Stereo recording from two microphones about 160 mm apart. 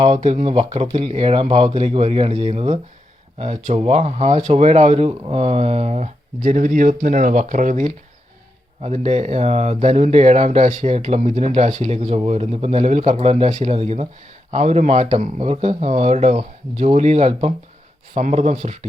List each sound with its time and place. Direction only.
0.1 s speech: 50° right (ahead or behind)